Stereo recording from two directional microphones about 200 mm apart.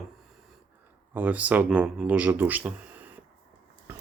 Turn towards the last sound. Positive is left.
turn(degrees=-10)  # may be behind; listen again after turning